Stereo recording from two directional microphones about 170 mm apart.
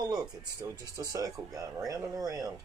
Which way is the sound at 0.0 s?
25° right (ahead or behind).